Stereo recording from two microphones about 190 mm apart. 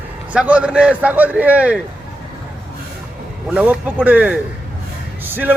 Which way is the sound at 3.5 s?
10° right (ahead or behind).